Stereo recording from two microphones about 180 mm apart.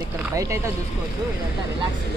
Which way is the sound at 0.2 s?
15° right (ahead or behind).